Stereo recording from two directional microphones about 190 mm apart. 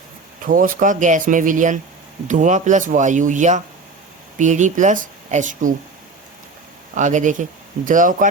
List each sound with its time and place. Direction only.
0.4 s speech: 45° right (ahead or behind)
6.9 s speech: 40° right (ahead or behind)